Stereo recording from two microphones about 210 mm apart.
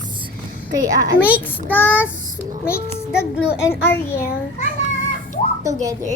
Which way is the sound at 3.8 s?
10° left (ahead or behind).